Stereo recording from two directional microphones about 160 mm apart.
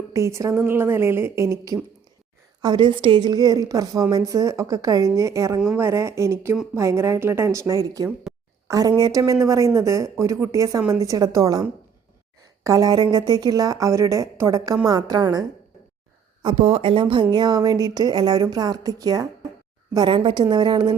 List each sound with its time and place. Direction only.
0.1 s a woman's voice: 20° right (ahead or behind)
12.6 s a woman's voice: 20° right (ahead or behind)
16.4 s a woman's voice: 35° right (ahead or behind)